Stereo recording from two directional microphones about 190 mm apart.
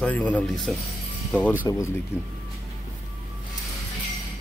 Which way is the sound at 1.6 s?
20° left (ahead or behind).